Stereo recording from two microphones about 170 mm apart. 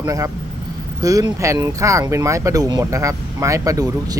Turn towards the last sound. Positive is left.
turn(degrees=-20)  # may be behind; listen again after turning